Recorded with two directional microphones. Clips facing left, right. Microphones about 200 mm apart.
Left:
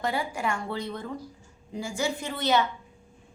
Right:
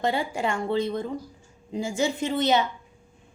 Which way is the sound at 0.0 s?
25° right (ahead or behind).